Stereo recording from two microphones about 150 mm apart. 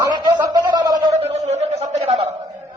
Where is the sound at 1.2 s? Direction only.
45° right (ahead or behind).